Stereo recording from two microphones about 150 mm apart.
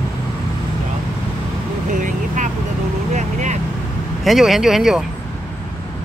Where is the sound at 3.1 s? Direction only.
50° right (ahead or behind).